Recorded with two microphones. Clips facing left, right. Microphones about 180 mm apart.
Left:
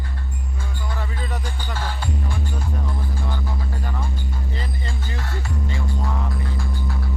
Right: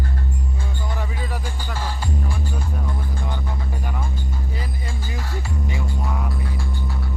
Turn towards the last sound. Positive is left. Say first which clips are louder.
# even
turn(degrees=-5)  # may be behind; listen again after turning